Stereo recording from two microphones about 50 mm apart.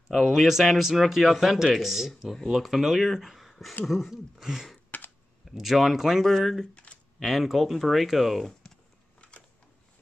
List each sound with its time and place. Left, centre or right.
0.1 s speech: centre
6.7 s a sound: left
7.2 s speech: centre